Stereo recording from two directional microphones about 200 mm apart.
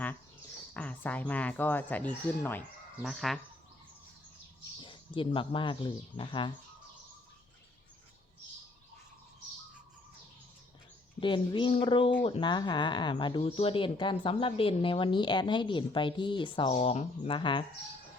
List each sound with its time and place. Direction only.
0.7 s speech: 5° left (ahead or behind)
4.8 s speech: 25° left (ahead or behind)
11.2 s speech: 25° left (ahead or behind)